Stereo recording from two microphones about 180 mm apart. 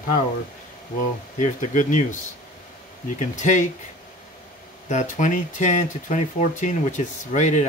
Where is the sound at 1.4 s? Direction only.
45° left (ahead or behind).